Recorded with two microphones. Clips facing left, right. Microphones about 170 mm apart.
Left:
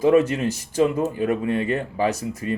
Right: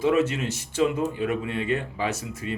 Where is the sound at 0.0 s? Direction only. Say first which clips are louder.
Left 5 dB; 35° left (ahead or behind).